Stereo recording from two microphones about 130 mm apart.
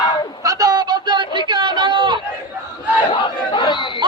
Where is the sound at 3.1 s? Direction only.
40° left (ahead or behind).